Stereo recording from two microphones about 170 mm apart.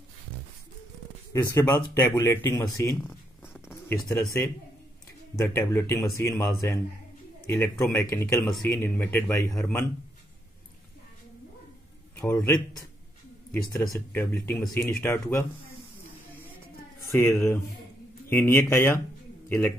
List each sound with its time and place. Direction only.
1.3 s speech: 15° left (ahead or behind)
12.2 s speech: 15° left (ahead or behind)
13.9 s speech: 15° left (ahead or behind)
17.0 s speech: 15° left (ahead or behind)